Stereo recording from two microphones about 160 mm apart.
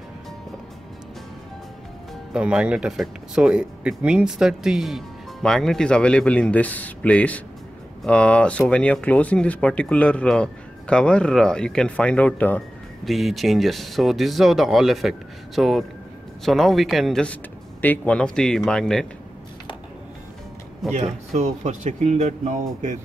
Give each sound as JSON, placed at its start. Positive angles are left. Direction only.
{"t": 2.3, "sound": "speech", "side_deg": -5}
{"t": 20.8, "sound": "speech", "side_deg": 0}
{"t": 21.4, "sound": "speech", "side_deg": -45}